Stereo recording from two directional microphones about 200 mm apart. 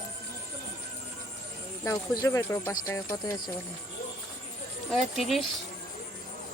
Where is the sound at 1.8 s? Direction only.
15° left (ahead or behind).